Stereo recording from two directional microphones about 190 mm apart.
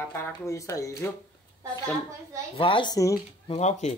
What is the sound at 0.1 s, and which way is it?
Speech, 15° left (ahead or behind).